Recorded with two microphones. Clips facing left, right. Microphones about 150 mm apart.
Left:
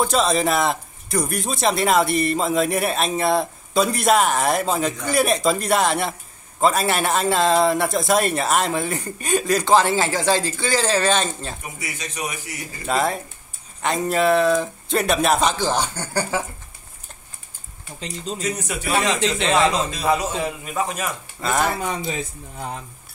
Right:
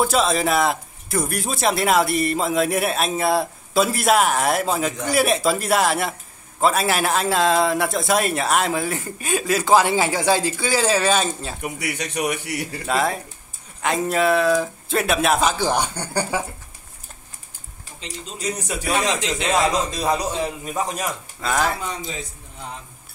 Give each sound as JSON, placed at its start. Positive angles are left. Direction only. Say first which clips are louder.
{"t": 0.0, "sound": "speech", "louder": "even", "side_deg": 0}
{"t": 11.6, "sound": "a man's voice", "louder": "right 6 dB", "side_deg": -65}
{"t": 12.8, "sound": "speech", "louder": "left 1 dB", "side_deg": 0}
{"t": 18.9, "sound": "speech", "louder": "left 1 dB", "side_deg": 0}
{"t": 19.2, "sound": "speech", "louder": "left 3 dB", "side_deg": 30}
{"t": 20.1, "sound": "a man's voice", "louder": "left 3 dB", "side_deg": -35}
{"t": 21.4, "sound": "speech", "louder": "left 1 dB", "side_deg": 0}
{"t": 21.8, "sound": "speech", "louder": "left 4 dB", "side_deg": 55}